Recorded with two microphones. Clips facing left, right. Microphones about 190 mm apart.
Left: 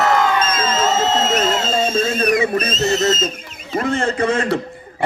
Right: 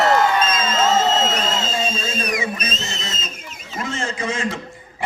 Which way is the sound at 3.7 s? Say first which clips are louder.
Left 8 dB; 60° left (ahead or behind).